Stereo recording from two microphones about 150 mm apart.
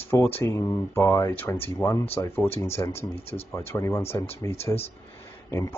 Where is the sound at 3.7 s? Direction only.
15° left (ahead or behind).